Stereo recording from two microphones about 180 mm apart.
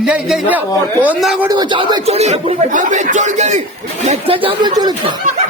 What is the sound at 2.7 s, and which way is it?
A man's voice, 45° right (ahead or behind).